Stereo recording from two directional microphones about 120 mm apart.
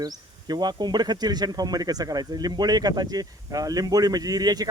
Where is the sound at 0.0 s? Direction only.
35° right (ahead or behind).